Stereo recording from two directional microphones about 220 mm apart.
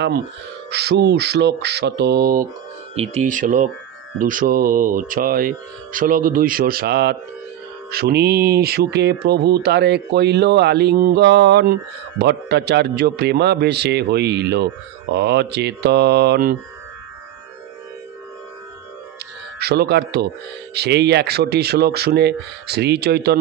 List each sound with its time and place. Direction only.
0.7 s speech: 50° right (ahead or behind)
3.0 s speech: 35° right (ahead or behind)
19.6 s speech: 45° right (ahead or behind)